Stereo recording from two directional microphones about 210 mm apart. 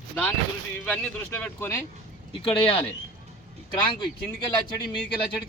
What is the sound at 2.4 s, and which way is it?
Speech, 25° left (ahead or behind).